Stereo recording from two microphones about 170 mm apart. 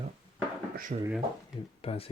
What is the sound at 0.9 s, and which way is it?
Speech, 55° right (ahead or behind).